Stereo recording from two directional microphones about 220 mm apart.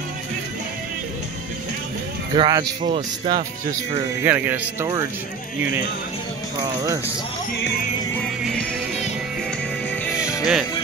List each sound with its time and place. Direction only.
2.3 s speech: 20° right (ahead or behind)
4.2 s speech: 10° right (ahead or behind)
8.1 s music: centre (ahead or behind)
10.4 s music: centre (ahead or behind)